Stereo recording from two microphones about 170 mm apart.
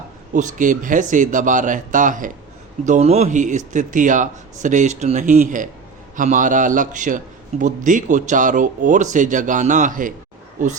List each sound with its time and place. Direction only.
0.3 s speech: 50° right (ahead or behind)